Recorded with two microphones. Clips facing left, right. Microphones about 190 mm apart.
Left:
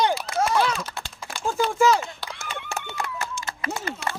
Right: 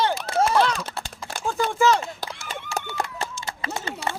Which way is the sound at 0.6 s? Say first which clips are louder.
Right 2 dB; 5° left (ahead or behind).